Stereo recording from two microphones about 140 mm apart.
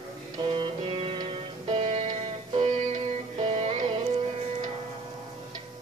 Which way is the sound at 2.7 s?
55° right (ahead or behind).